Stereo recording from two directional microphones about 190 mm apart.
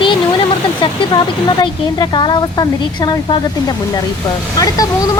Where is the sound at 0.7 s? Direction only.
25° left (ahead or behind).